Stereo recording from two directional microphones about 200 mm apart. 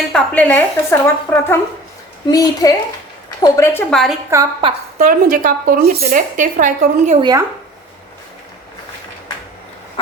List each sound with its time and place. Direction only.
0.1 s a woman's voice: 10° left (ahead or behind)
4.3 s a woman's voice: 15° right (ahead or behind)
4.9 s speech: 45° right (ahead or behind)
7.2 s speech: 20° right (ahead or behind)